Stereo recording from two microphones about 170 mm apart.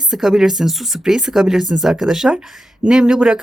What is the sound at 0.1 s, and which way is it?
Speech, 5° right (ahead or behind).